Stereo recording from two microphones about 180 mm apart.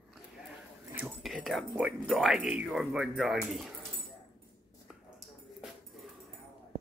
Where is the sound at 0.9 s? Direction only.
Centre (ahead or behind).